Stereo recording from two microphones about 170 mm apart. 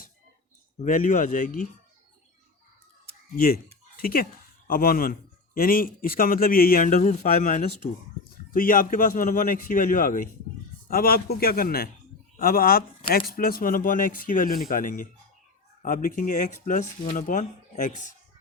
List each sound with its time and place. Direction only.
0.8 s speech: 50° left (ahead or behind)
3.3 s speech: 60° left (ahead or behind)
10.8 s speech: 60° left (ahead or behind)